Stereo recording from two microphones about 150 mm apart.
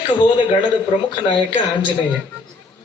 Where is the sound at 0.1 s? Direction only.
35° left (ahead or behind).